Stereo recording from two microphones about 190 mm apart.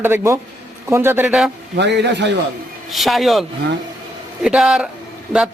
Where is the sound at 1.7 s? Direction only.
65° right (ahead or behind).